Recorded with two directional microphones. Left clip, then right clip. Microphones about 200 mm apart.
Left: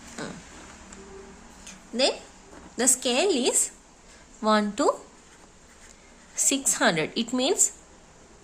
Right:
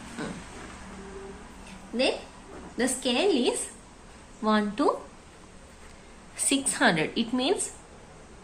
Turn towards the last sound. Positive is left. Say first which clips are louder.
# left 1 dB
turn(degrees=35)  # may be behind; listen again after turning